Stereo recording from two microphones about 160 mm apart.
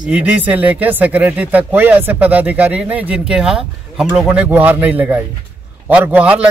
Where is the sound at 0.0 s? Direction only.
10° right (ahead or behind).